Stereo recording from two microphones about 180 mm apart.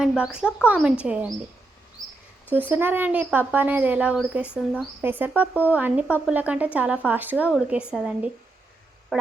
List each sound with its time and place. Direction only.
0.0 s speech: 5° right (ahead or behind)
2.5 s speech: 10° right (ahead or behind)